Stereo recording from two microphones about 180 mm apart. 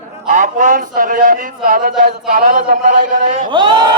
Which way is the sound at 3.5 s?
25° right (ahead or behind).